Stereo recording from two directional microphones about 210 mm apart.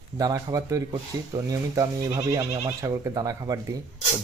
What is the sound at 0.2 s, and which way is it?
A man's voice, 15° right (ahead or behind).